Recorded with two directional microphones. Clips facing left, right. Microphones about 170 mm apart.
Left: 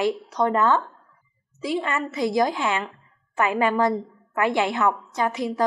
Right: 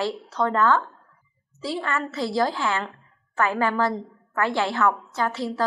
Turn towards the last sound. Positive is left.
turn(degrees=15)  # may be behind; listen again after turning